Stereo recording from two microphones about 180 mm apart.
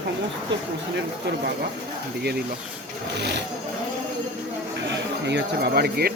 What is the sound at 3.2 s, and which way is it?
Speech, 70° right (ahead or behind).